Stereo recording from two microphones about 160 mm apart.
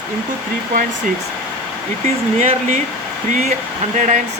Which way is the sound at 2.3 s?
45° right (ahead or behind).